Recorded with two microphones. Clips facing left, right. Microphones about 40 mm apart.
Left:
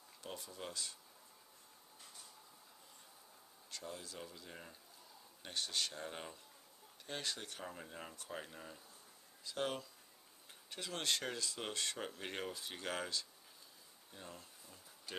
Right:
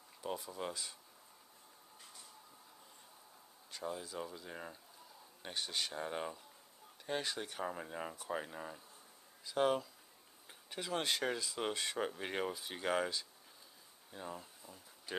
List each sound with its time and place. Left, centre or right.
0.2 s speech: centre
3.7 s speech: centre